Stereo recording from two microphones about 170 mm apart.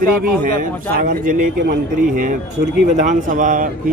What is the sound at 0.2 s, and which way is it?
A man's voice, 55° right (ahead or behind).